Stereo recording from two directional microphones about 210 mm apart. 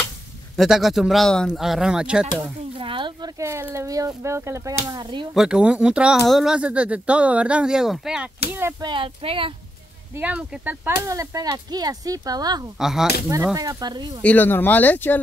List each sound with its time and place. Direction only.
0.6 s speech: centre (ahead or behind)
2.8 s speech: 25° right (ahead or behind)
5.3 s speech: 5° right (ahead or behind)
8.9 s speech: 25° right (ahead or behind)
10.1 s speech: 5° right (ahead or behind)
12.7 s speech: centre (ahead or behind)
13.3 s speech: 15° right (ahead or behind)
14.2 s speech: 10° left (ahead or behind)